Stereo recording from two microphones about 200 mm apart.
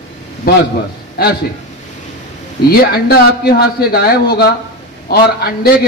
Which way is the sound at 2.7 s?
50° left (ahead or behind).